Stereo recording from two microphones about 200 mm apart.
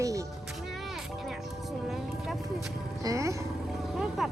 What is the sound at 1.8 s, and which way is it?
Music, centre (ahead or behind).